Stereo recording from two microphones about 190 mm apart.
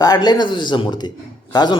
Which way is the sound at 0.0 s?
20° left (ahead or behind).